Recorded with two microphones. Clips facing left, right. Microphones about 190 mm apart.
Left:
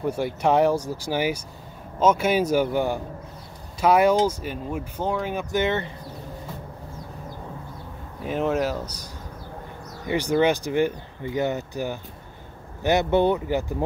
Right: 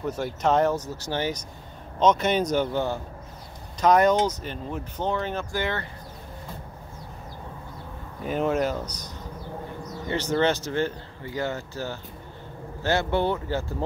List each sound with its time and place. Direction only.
0.0 s speech: 10° left (ahead or behind)
8.2 s speech: centre (ahead or behind)